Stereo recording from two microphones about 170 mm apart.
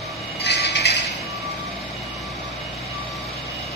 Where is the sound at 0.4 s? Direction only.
85° left.